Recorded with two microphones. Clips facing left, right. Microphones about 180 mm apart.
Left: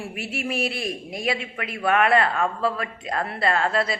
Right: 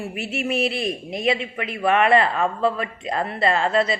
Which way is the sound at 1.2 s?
5° left (ahead or behind).